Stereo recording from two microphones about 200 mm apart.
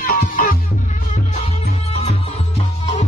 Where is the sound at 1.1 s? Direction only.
35° left (ahead or behind).